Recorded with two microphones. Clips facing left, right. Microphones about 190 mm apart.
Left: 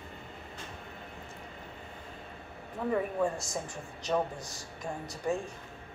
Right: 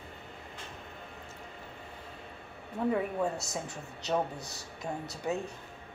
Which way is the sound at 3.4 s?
65° right (ahead or behind).